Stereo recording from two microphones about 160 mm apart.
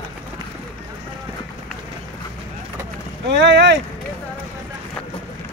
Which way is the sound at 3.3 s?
90° right.